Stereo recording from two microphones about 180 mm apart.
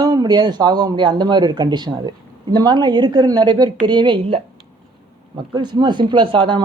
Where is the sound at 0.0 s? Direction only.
20° right (ahead or behind).